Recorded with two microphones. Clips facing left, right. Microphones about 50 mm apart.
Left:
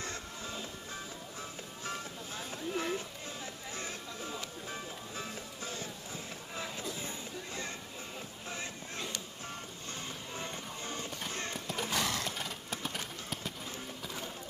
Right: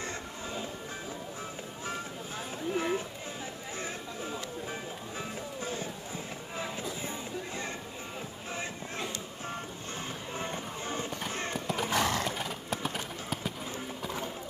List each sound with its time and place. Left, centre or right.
0.0 s music: right
2.7 s music: right
8.5 s a sound: right
10.3 s music: right
11.5 s a sound: centre
11.9 s horse: right
12.4 s horse: centre
14.0 s music: right